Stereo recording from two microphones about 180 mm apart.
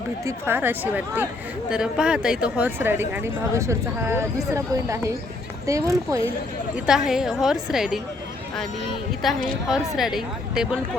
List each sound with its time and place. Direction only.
0.3 s a woman's voice: 10° right (ahead or behind)
6.7 s a woman's voice: 5° right (ahead or behind)
9.2 s a woman's voice: centre (ahead or behind)